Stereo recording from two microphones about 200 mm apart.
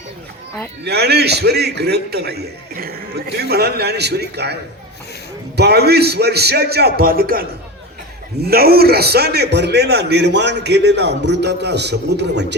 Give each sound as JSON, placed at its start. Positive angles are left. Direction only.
{"t": 0.9, "sound": "a man's voice", "side_deg": -55}
{"t": 5.5, "sound": "a man's voice", "side_deg": -55}